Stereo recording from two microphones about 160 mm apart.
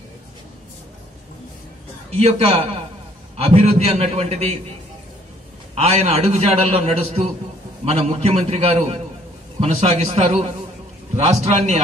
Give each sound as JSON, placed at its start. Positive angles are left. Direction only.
{"t": 2.1, "sound": "a man's voice", "side_deg": -40}
{"t": 5.8, "sound": "a man's voice", "side_deg": -45}